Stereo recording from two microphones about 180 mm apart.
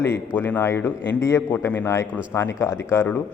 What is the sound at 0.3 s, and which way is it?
A man's voice, 10° left (ahead or behind).